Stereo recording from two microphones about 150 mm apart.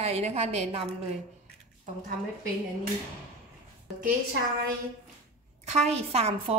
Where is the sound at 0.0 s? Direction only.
45° right (ahead or behind).